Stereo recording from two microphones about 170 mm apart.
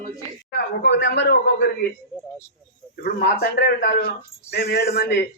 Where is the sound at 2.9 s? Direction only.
65° left (ahead or behind).